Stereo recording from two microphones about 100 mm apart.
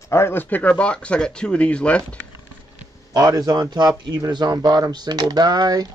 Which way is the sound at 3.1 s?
40° right (ahead or behind).